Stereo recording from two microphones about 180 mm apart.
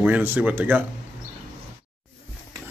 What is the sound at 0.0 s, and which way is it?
Speech, 10° right (ahead or behind).